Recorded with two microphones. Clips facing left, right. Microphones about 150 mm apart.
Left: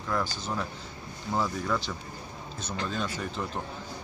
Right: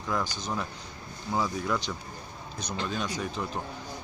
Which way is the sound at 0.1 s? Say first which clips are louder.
Even; 20° right (ahead or behind).